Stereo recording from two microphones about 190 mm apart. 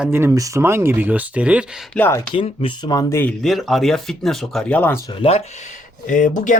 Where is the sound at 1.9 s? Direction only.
10° left (ahead or behind).